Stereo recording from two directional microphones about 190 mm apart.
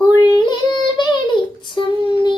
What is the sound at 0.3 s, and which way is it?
Child singing, 25° left (ahead or behind).